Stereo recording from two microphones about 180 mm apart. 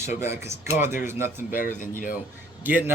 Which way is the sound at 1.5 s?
50° left (ahead or behind).